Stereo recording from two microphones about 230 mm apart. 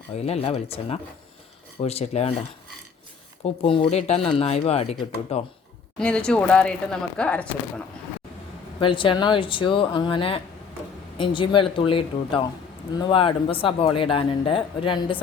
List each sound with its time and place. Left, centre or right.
0.1 s speech: left
3.4 s speech: left
6.0 s speech: centre
8.8 s speech: left